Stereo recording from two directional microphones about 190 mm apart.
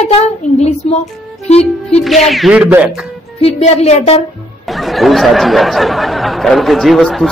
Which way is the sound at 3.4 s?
35° left (ahead or behind).